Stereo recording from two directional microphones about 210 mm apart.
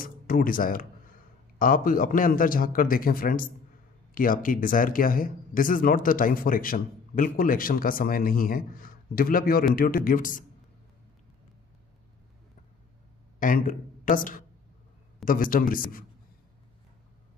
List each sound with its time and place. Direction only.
0.0 s speech: 40° left (ahead or behind)
13.4 s speech: 40° left (ahead or behind)